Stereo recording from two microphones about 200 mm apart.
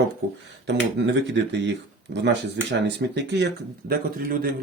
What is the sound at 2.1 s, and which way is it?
Speech, 60° right (ahead or behind).